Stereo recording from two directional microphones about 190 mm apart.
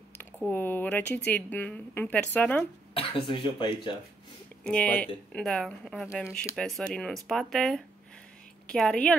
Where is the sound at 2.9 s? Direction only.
30° left (ahead or behind).